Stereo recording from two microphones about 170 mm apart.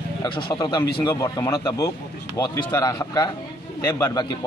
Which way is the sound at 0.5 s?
20° left (ahead or behind).